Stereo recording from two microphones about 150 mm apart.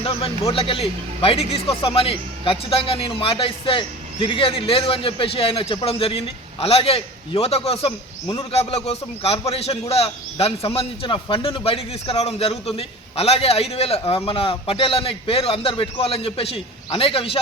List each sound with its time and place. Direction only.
0.5 s a man's voice: 40° left (ahead or behind)